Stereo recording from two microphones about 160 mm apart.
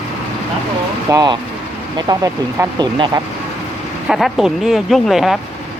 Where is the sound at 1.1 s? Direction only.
25° right (ahead or behind).